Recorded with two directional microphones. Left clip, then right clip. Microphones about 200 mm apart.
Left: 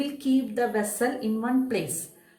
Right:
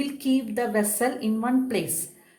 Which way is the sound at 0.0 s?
40° right (ahead or behind).